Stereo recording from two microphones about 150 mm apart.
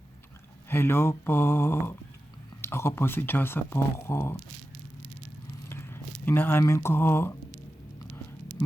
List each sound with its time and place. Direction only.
0.7 s speech: 15° left (ahead or behind)
5.6 s speech: 15° left (ahead or behind)